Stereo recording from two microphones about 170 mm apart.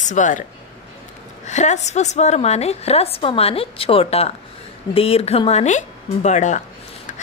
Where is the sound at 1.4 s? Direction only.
45° left (ahead or behind).